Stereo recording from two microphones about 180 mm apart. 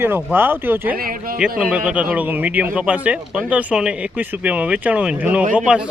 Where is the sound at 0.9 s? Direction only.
55° right (ahead or behind).